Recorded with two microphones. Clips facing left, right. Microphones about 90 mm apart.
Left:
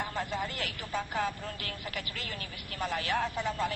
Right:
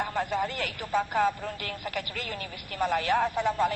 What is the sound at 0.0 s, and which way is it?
A man's voice, 45° right (ahead or behind).